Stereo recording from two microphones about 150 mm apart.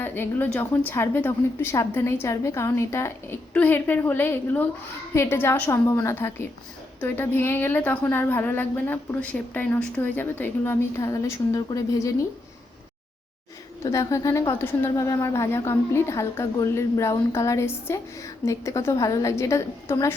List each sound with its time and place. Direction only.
0.0 s a woman's voice: 15° left (ahead or behind)
13.9 s a woman's voice: 20° left (ahead or behind)